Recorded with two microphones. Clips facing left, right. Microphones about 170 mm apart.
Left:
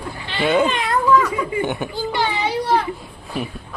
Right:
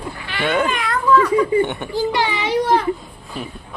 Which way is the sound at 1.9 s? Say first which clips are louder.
Right 2 dB; 90° right.